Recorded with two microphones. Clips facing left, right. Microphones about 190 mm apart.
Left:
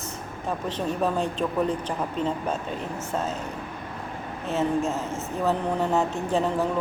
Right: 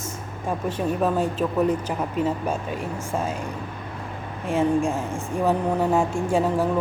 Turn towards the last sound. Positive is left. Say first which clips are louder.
# right 3 dB
turn(degrees=-10)  # may be behind; listen again after turning